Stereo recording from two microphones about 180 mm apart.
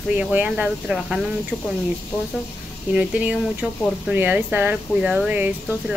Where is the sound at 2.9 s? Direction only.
5° right (ahead or behind).